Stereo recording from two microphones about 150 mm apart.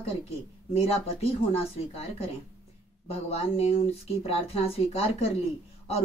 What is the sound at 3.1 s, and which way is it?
A woman's voice, 40° left (ahead or behind).